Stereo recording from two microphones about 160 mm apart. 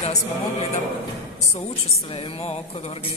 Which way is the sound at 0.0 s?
40° left (ahead or behind).